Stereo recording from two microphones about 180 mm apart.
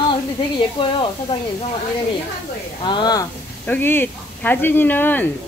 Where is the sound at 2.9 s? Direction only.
25° left (ahead or behind).